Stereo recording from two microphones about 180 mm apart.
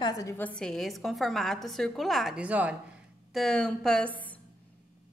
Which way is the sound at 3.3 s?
5° left (ahead or behind).